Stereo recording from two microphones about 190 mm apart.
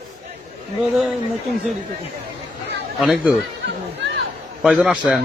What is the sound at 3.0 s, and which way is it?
Speech, 5° right (ahead or behind).